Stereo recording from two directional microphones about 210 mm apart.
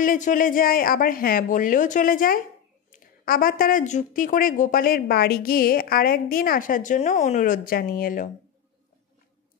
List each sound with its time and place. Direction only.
0.0 s speech: 40° left (ahead or behind)